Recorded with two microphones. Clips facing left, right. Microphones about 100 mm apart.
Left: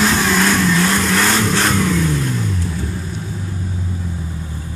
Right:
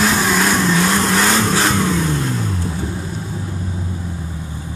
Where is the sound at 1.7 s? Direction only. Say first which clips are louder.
Left 1 dB; 25° right (ahead or behind).